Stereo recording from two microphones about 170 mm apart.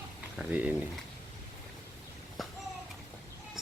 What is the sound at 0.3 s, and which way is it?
Speech, 5° right (ahead or behind).